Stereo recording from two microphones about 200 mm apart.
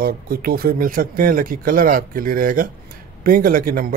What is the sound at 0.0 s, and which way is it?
Speech, 50° right (ahead or behind).